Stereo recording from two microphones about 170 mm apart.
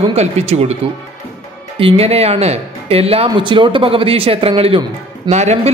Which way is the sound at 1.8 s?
35° right (ahead or behind).